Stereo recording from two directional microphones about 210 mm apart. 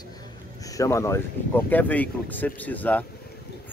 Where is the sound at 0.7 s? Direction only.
15° left (ahead or behind).